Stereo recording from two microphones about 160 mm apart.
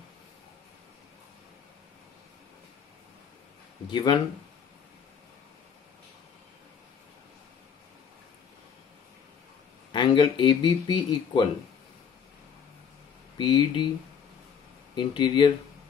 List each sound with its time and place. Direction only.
3.8 s speech: 30° left (ahead or behind)
9.9 s speech: 30° left (ahead or behind)
13.4 s speech: 30° left (ahead or behind)
15.0 s speech: 30° left (ahead or behind)